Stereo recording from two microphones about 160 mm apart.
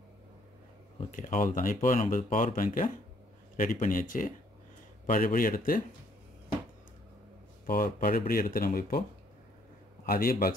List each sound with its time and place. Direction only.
1.1 s speech: 55° left (ahead or behind)
7.6 s speech: 65° left (ahead or behind)
10.0 s speech: 65° left (ahead or behind)